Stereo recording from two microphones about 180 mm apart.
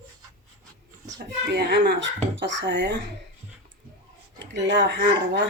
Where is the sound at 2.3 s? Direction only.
90° right.